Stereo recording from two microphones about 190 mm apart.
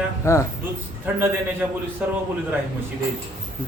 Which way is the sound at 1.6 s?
10° right (ahead or behind).